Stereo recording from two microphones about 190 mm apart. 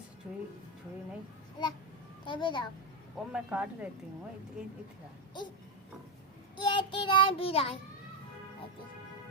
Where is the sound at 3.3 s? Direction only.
5° right (ahead or behind).